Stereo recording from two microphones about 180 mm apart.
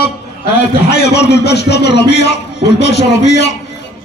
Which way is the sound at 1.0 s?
65° left (ahead or behind).